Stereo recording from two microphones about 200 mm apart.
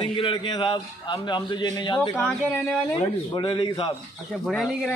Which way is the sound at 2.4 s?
5° right (ahead or behind).